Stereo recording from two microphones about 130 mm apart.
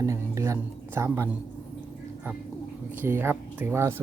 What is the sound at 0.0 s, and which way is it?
Music, 25° right (ahead or behind).